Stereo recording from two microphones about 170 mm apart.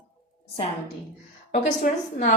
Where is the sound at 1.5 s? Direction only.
50° left (ahead or behind).